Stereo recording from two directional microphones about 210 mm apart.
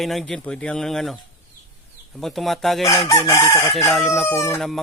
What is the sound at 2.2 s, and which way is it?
Speech, centre (ahead or behind).